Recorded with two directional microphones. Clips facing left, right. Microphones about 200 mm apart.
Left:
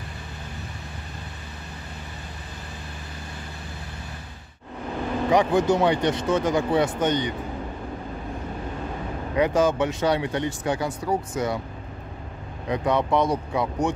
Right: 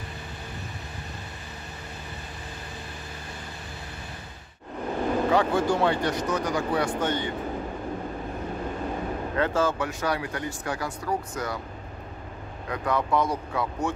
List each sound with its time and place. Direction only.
5.3 s speech: 15° left (ahead or behind)
9.3 s speech: 15° left (ahead or behind)
12.6 s speech: 20° left (ahead or behind)